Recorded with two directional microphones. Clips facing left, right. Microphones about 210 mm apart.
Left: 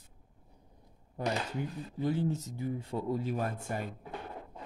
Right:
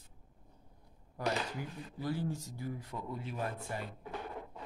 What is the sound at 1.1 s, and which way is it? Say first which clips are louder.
Speech: left 2 dB; 20° left (ahead or behind).